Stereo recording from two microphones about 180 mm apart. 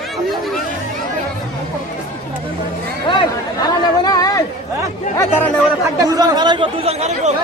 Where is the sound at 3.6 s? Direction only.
20° left (ahead or behind).